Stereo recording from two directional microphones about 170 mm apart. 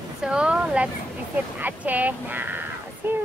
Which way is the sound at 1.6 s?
10° right (ahead or behind).